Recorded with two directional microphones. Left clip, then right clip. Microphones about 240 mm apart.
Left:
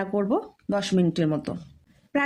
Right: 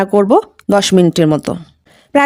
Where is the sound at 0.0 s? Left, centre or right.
Right.